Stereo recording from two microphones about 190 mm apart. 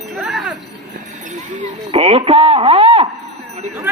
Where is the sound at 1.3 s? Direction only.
35° right (ahead or behind).